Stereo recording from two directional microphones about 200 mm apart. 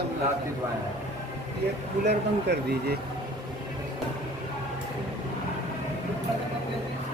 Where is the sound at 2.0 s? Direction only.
55° right (ahead or behind).